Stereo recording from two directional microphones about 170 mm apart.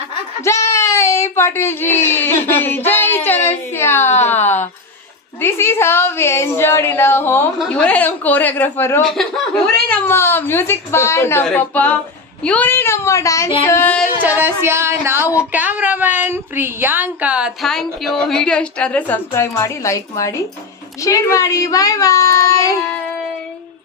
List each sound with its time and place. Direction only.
0.4 s a sound: 15° left (ahead or behind)
5.4 s speech: 15° left (ahead or behind)
9.0 s speech: centre (ahead or behind)
14.2 s a woman's voice: 10° right (ahead or behind); by 22.9 s 20° left (ahead or behind)